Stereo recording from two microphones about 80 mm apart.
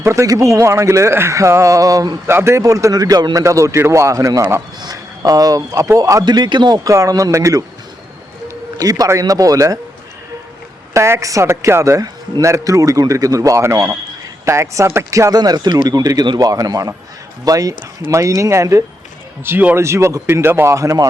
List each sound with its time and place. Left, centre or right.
0.0 s a man's voice: right
2.2 s a man's voice: right
2.9 s speech: right
3.4 s a man's voice: right
6.2 s speech: right
6.8 s a man's voice: right
8.8 s a man's voice: right
10.9 s a man's voice: right
15.4 s a man's voice: right
19.5 s a man's voice: right
20.7 s a man's voice: right